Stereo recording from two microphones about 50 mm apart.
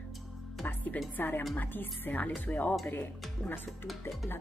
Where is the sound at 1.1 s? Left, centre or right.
Left.